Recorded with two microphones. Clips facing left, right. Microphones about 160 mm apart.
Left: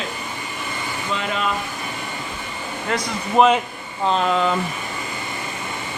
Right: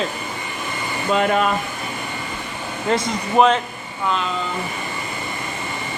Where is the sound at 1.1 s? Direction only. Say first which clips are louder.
Right 8 dB; 50° right (ahead or behind).